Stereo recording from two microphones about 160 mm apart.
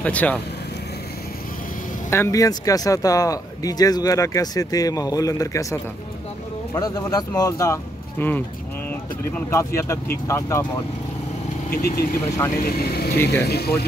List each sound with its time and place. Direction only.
0.0 s speech: 10° left (ahead or behind)
2.0 s speech: 15° left (ahead or behind)
11.7 s speech: 70° left (ahead or behind)
13.3 s speech: 90° left